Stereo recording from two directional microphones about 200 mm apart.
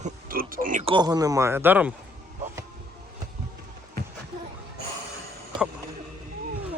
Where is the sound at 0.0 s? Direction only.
45° right (ahead or behind).